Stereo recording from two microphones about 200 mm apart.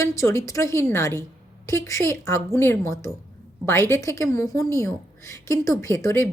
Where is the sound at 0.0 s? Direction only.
15° left (ahead or behind).